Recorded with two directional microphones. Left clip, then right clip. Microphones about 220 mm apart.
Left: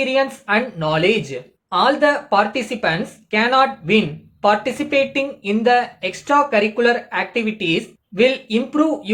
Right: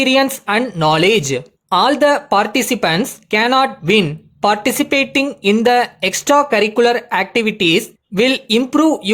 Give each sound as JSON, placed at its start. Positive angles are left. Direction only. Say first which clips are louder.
{"t": 0.0, "sound": "speech", "louder": "right 4 dB", "side_deg": -50}